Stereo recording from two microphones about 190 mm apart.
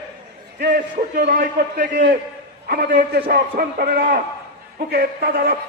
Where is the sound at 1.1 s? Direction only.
45° right (ahead or behind).